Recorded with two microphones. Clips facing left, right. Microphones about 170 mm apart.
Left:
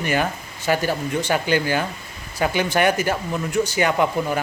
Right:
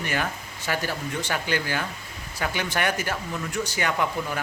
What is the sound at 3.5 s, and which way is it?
Speech, centre (ahead or behind).